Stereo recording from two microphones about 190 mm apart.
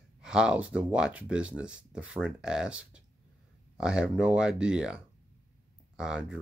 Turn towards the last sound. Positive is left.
turn(degrees=-5)  # may be behind; listen again after turning